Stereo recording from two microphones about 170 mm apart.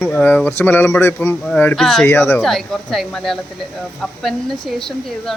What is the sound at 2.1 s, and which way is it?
Speech, 15° left (ahead or behind).